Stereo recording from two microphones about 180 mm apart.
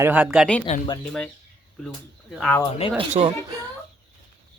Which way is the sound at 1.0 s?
5° left (ahead or behind).